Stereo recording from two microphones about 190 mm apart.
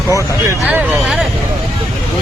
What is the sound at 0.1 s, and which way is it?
Speech, 15° left (ahead or behind).